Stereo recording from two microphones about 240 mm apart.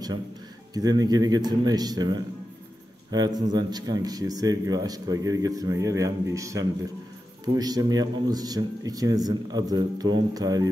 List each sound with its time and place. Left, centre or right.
0.7 s speech: centre